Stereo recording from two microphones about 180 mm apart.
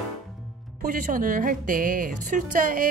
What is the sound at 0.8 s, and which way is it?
A woman's voice, 45° right (ahead or behind).